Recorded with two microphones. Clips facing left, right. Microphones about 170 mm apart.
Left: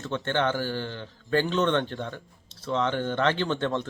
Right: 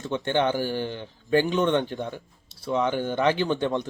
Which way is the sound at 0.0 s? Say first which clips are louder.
Right 3 dB; 15° right (ahead or behind).